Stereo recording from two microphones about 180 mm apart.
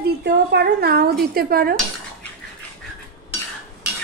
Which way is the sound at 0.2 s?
65° right (ahead or behind).